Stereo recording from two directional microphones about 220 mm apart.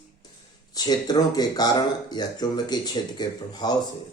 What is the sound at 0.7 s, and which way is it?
Speech, 15° left (ahead or behind).